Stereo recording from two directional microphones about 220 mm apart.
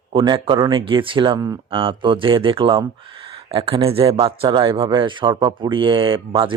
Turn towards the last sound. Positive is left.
turn(degrees=-20)  # may be behind; listen again after turning